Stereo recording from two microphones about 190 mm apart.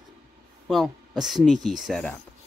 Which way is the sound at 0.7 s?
Centre (ahead or behind).